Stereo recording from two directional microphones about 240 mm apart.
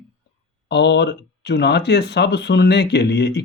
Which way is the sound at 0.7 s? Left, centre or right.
Left.